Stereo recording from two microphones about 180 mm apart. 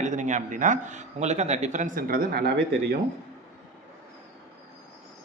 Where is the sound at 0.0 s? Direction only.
40° right (ahead or behind).